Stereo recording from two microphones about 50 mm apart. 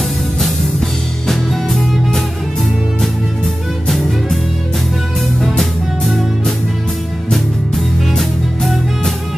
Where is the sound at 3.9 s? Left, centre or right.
Centre.